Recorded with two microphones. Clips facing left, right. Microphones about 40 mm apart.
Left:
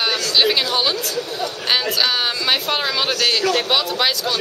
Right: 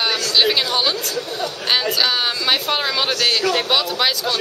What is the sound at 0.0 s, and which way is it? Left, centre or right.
Speech, centre.